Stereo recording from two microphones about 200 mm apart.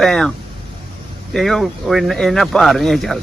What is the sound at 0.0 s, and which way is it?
Speech, centre (ahead or behind).